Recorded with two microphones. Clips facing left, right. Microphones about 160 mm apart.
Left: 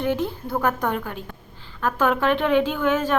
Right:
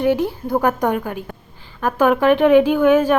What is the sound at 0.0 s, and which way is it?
A woman's voice, 10° right (ahead or behind).